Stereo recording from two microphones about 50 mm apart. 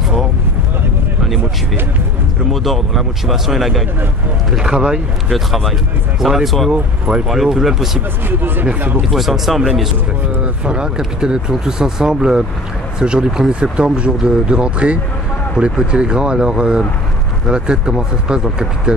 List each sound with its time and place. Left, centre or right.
2.5 s speech: centre
4.6 s speech: centre
6.2 s speech: centre
6.7 s speech: right
7.2 s speech: centre
8.3 s speech: right
9.1 s speech: centre
10.4 s speech: right